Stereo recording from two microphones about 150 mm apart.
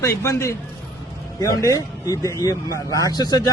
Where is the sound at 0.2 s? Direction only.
20° left (ahead or behind).